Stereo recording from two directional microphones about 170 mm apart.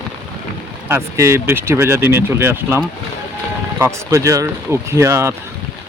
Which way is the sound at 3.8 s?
20° right (ahead or behind).